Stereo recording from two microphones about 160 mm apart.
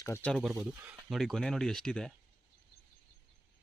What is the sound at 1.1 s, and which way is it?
Speech, centre (ahead or behind).